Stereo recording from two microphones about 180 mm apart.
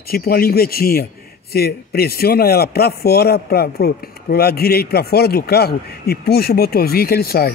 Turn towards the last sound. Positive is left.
turn(degrees=60)  # may be behind; listen again after turning